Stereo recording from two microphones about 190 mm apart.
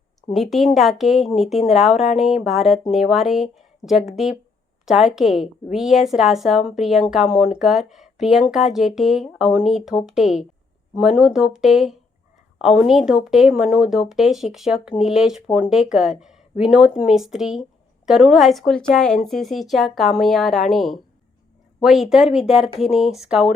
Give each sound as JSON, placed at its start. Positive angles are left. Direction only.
{"t": 0.3, "sound": "speech", "side_deg": 0}